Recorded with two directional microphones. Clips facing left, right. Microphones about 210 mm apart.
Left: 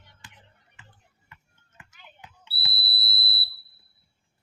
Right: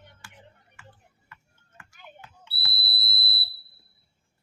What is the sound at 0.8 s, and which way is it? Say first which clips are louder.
Music: right 5 dB; 20° left (ahead or behind).